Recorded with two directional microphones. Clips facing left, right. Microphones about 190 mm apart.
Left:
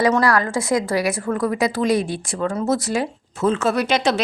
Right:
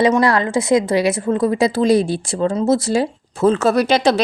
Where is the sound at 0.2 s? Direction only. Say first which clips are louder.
Right 3 dB; 25° right (ahead or behind).